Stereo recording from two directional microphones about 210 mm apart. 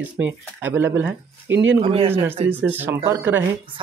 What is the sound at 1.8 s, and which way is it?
Speech, 25° right (ahead or behind).